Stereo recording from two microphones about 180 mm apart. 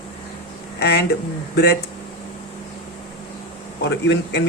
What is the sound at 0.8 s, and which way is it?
Speech, 65° left (ahead or behind).